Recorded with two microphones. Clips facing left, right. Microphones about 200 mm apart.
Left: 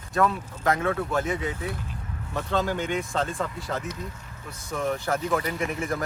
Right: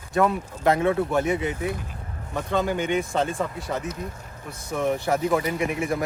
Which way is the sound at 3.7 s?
10° right (ahead or behind).